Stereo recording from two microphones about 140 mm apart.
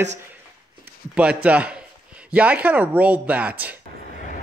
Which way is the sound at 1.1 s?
10° right (ahead or behind).